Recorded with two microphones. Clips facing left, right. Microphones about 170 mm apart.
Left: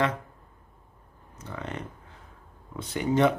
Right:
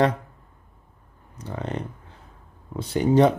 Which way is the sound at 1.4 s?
35° right (ahead or behind).